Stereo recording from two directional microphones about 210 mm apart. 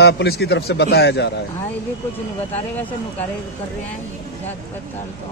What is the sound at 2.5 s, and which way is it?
Speech, 10° left (ahead or behind).